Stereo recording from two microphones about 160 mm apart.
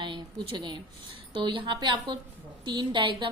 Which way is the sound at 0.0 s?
30° right (ahead or behind).